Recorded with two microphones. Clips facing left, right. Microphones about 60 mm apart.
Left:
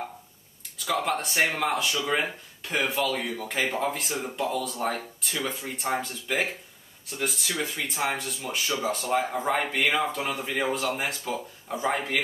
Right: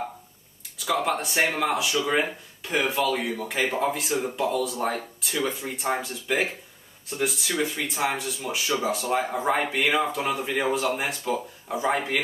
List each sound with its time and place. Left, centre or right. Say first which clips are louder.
0.7 s speech: right 2 dB; centre